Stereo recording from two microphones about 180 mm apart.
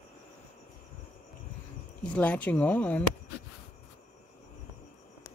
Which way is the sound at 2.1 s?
10° left (ahead or behind).